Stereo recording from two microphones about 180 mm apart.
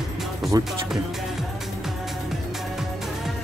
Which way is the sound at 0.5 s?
20° right (ahead or behind).